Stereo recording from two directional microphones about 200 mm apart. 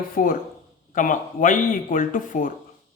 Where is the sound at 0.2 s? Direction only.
40° left (ahead or behind).